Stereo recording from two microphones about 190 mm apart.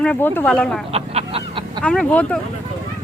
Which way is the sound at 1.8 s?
5° left (ahead or behind).